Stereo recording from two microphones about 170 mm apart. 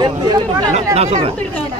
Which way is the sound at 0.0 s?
25° right (ahead or behind).